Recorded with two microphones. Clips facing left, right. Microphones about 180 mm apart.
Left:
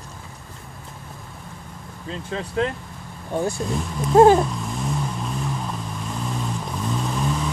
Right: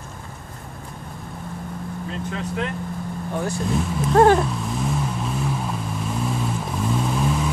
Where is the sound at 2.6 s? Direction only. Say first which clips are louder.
Left 6 dB; 30° left (ahead or behind).